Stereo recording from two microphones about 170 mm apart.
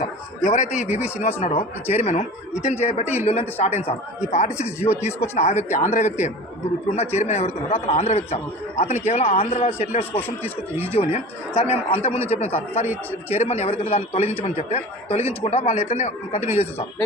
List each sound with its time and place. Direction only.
0.4 s a man's voice: 45° left (ahead or behind)
0.9 s speech: 10° right (ahead or behind)
1.2 s a man's voice: 40° left (ahead or behind)
3.0 s speech: 10° right (ahead or behind)
3.2 s a man's voice: 40° left (ahead or behind)
10.2 s speech: 10° left (ahead or behind)
10.9 s a man's voice: 35° left (ahead or behind)